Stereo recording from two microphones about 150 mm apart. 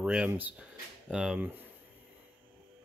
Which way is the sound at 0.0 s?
10° right (ahead or behind).